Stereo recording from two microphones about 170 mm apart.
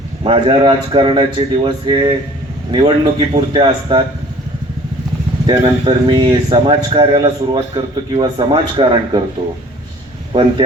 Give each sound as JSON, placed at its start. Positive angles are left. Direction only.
{"t": 0.2, "sound": "a man's voice", "side_deg": -30}
{"t": 5.6, "sound": "a man's voice", "side_deg": -30}
{"t": 10.3, "sound": "a man's voice", "side_deg": -25}